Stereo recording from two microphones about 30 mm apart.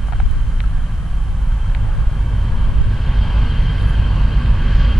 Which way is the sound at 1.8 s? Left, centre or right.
Centre.